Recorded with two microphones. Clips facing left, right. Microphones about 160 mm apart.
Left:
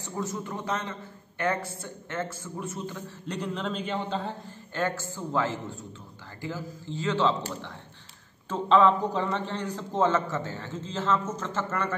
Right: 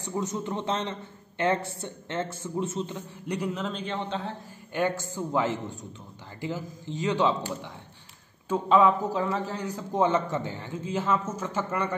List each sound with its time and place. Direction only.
0.0 s a man's voice: 20° right (ahead or behind)
3.3 s a man's voice: 10° right (ahead or behind)
4.7 s a man's voice: 15° right (ahead or behind)
8.5 s a man's voice: 10° right (ahead or behind)